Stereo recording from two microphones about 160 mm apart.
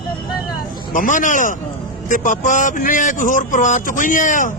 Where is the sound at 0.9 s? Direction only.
55° left (ahead or behind).